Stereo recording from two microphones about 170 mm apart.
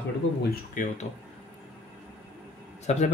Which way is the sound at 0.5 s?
50° left (ahead or behind).